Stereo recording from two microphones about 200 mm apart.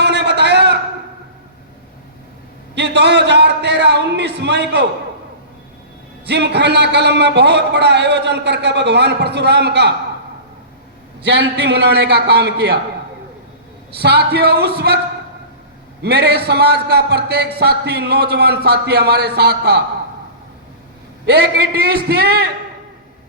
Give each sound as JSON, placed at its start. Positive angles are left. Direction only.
{"t": 0.0, "sound": "a sound", "side_deg": -60}
{"t": 2.7, "sound": "a sound", "side_deg": -60}
{"t": 6.2, "sound": "speech", "side_deg": -60}
{"t": 11.2, "sound": "speech", "side_deg": -60}
{"t": 13.9, "sound": "speech", "side_deg": -55}
{"t": 16.0, "sound": "speech", "side_deg": -55}
{"t": 21.2, "sound": "a man's voice", "side_deg": -55}